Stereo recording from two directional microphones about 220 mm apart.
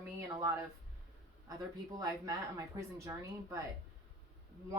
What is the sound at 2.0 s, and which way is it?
A woman's voice, 15° right (ahead or behind).